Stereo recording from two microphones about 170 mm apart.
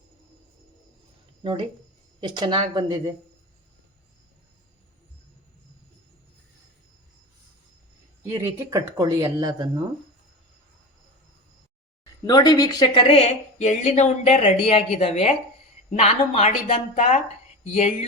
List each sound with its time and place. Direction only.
2.2 s speech: 25° right (ahead or behind)
8.2 s speech: 15° right (ahead or behind)
12.2 s speech: 25° left (ahead or behind); by 18.0 s 40° left (ahead or behind)